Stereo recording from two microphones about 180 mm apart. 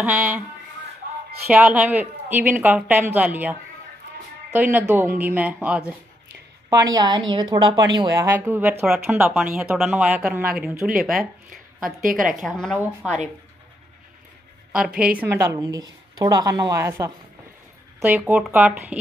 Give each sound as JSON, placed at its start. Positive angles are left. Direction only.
{"t": 0.0, "sound": "a woman's voice", "side_deg": -10}
{"t": 1.5, "sound": "a woman's voice", "side_deg": -5}
{"t": 6.7, "sound": "a woman's voice", "side_deg": -20}
{"t": 11.1, "sound": "a sound", "side_deg": -50}
{"t": 12.4, "sound": "speech", "side_deg": 5}
{"t": 14.7, "sound": "a woman's voice", "side_deg": -5}